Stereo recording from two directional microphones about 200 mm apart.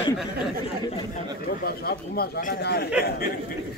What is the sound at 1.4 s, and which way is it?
Speech, 50° left (ahead or behind).